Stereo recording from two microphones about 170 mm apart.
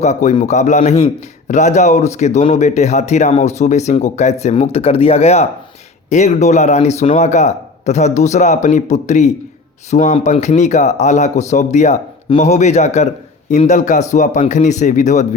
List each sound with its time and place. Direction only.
0.0 s a man's voice: 45° left (ahead or behind)